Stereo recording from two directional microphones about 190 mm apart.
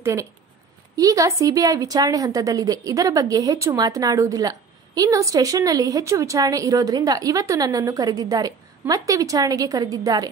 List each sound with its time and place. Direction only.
0.0 s a woman's voice: 15° right (ahead or behind)